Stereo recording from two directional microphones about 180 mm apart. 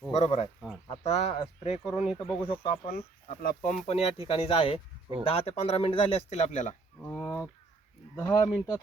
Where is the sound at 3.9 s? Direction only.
30° left (ahead or behind).